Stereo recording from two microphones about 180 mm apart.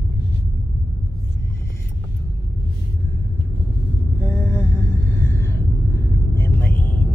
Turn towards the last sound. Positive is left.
turn(degrees=10)  # may be behind; listen again after turning